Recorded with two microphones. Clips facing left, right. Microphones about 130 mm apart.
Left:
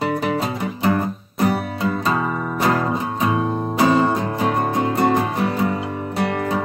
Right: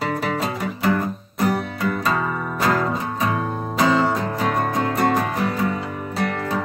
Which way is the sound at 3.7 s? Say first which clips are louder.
Left 2 dB; 30° left (ahead or behind).